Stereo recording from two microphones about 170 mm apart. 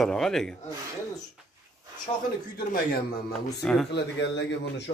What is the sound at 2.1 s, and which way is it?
Speech, 25° left (ahead or behind).